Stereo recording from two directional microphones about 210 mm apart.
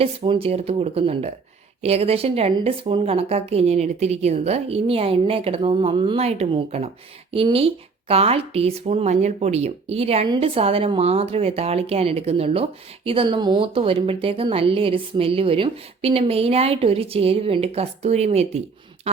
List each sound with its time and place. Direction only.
0.0 s speech: 25° right (ahead or behind)